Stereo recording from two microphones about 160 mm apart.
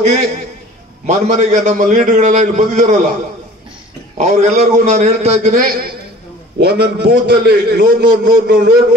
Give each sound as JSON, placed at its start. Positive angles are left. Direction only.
{"t": 0.0, "sound": "a man's voice", "side_deg": -45}
{"t": 4.2, "sound": "a man's voice", "side_deg": -45}
{"t": 6.6, "sound": "a man's voice", "side_deg": -90}